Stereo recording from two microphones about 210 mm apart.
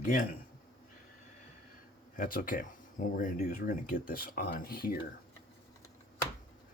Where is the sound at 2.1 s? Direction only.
45° left (ahead or behind).